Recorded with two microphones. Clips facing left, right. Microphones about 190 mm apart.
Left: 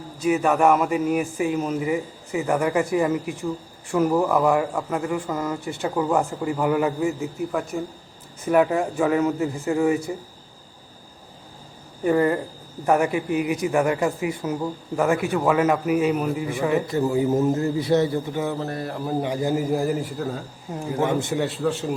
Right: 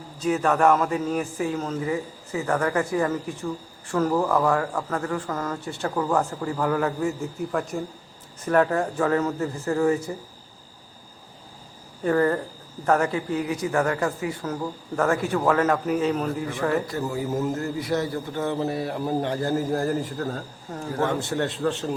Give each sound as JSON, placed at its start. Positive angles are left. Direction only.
{"t": 0.2, "sound": "speech", "side_deg": 10}
{"t": 12.0, "sound": "speech", "side_deg": 10}
{"t": 16.8, "sound": "a man's voice", "side_deg": 25}
{"t": 18.4, "sound": "mantra", "side_deg": 0}
{"t": 19.3, "sound": "speech", "side_deg": 15}
{"t": 20.1, "sound": "mantra", "side_deg": 0}
{"t": 20.7, "sound": "speech", "side_deg": 15}
{"t": 21.3, "sound": "mantra", "side_deg": 5}